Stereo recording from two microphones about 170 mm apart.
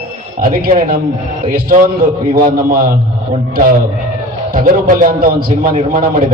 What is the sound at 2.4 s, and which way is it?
Speech, 55° right (ahead or behind).